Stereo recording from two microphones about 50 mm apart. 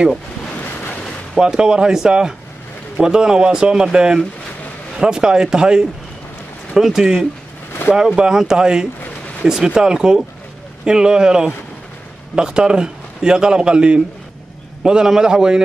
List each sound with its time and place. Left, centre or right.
0.6 s waves: left
1.4 s a man's voice: centre